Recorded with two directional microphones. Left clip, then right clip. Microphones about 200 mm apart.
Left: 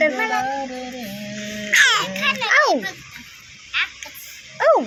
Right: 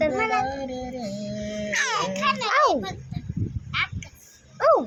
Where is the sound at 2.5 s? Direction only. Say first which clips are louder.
Left 4 dB; 15° left (ahead or behind).